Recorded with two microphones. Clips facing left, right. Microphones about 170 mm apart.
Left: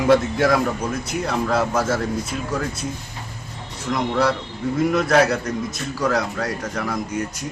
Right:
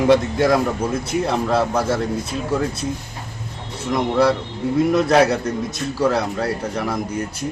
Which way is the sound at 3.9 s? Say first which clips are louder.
Right 3 dB; 30° right (ahead or behind).